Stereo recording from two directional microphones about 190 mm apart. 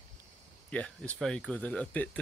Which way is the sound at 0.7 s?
5° left (ahead or behind).